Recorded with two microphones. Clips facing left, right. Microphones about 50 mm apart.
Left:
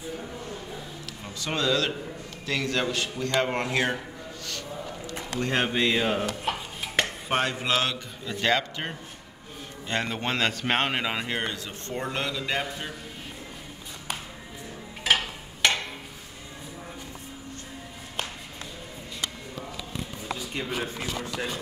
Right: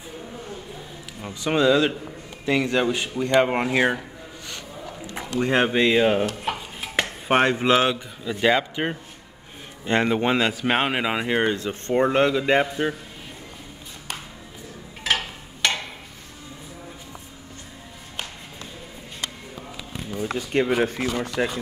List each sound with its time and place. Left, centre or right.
1.2 s speech: centre
5.4 s speech: centre
6.4 s a sound: centre
7.2 s speech: right
7.9 s speech: centre
9.8 s speech: right
10.1 s speech: centre
11.5 s speech: right
15.0 s a sound: centre
20.2 s a sound: right
20.8 s speech: right